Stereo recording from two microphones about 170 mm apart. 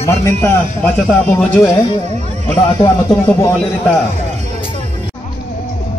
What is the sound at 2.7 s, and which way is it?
Speech, 20° left (ahead or behind).